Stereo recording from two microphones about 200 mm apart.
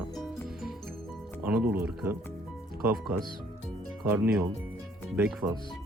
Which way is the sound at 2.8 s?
10° right (ahead or behind).